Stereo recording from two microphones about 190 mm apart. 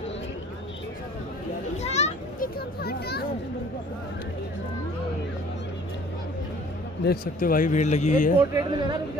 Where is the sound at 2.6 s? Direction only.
55° left (ahead or behind).